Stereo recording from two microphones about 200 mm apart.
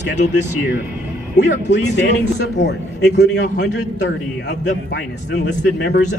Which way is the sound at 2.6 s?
60° left (ahead or behind).